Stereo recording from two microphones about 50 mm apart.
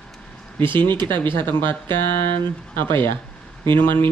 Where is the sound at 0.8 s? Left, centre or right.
Left.